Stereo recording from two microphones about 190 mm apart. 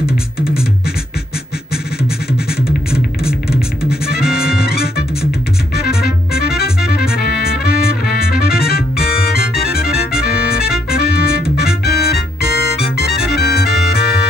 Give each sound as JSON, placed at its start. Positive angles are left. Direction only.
{"t": 4.3, "sound": "music", "side_deg": 55}